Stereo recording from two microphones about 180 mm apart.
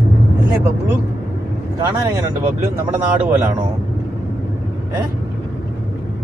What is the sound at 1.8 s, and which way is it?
A man's voice, 20° right (ahead or behind).